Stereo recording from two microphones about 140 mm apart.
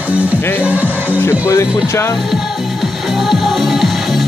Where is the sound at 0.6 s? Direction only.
10° right (ahead or behind).